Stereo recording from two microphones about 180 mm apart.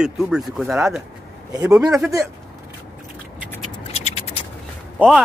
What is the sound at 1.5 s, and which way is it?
Speech, 20° right (ahead or behind).